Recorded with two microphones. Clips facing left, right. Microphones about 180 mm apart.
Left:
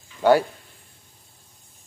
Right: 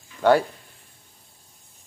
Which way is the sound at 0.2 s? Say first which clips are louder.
Left 1 dB; 5° left (ahead or behind).